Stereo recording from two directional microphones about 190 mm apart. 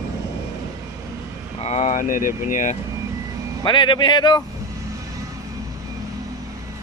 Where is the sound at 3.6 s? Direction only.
25° left (ahead or behind).